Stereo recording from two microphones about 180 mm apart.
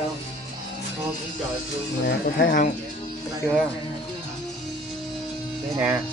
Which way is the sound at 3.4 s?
5° left (ahead or behind).